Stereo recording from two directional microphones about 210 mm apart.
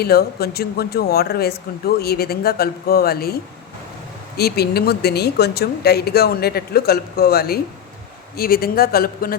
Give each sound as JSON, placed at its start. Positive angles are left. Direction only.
{"t": 0.0, "sound": "speech", "side_deg": 50}
{"t": 4.4, "sound": "speech", "side_deg": 50}